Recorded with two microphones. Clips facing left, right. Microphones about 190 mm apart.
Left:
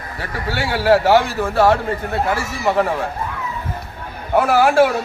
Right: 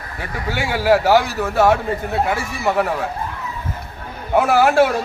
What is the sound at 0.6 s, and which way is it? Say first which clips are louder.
A man's voice: left 1 dB; 10° right (ahead or behind).